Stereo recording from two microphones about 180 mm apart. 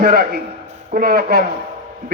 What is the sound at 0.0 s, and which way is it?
A man's voice, 55° right (ahead or behind).